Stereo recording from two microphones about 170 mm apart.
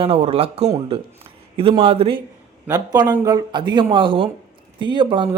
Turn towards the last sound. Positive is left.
turn(degrees=-25)  # may be behind; listen again after turning